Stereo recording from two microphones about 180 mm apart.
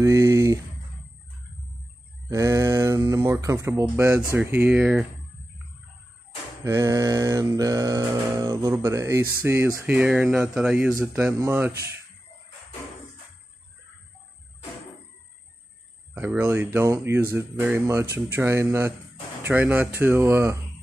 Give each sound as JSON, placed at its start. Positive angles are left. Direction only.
{"t": 0.0, "sound": "speech", "side_deg": -15}
{"t": 2.2, "sound": "speech", "side_deg": -20}
{"t": 6.6, "sound": "music", "side_deg": -15}
{"t": 8.8, "sound": "speech", "side_deg": -20}
{"t": 16.2, "sound": "speech", "side_deg": -10}